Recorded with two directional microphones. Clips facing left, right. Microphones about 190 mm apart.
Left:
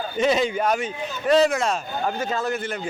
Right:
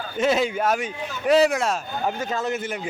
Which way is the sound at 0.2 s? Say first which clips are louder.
Even; 5° right (ahead or behind).